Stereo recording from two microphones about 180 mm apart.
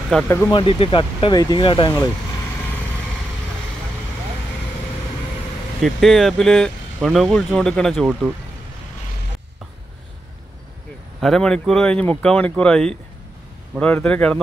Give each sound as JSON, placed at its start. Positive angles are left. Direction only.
{"t": 0.1, "sound": "speech", "side_deg": 10}
{"t": 0.5, "sound": "speech", "side_deg": 30}
{"t": 5.8, "sound": "speech", "side_deg": 0}
{"t": 11.1, "sound": "speech", "side_deg": 0}